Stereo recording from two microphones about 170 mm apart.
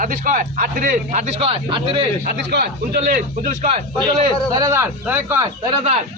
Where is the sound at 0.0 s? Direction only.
50° right (ahead or behind); by 2.0 s 30° right (ahead or behind).